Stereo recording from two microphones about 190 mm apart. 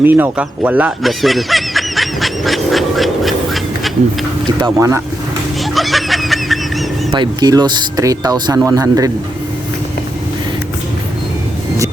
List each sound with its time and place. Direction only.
0.0 s snicker: 10° right (ahead or behind)
4.4 s speech: 20° right (ahead or behind)
5.7 s snicker: centre (ahead or behind)
7.1 s speech: 20° right (ahead or behind)